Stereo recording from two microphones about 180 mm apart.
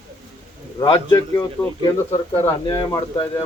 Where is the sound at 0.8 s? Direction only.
25° left (ahead or behind).